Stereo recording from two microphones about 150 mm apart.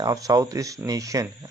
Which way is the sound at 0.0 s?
25° right (ahead or behind).